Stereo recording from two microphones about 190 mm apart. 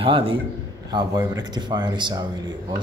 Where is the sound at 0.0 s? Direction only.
30° right (ahead or behind).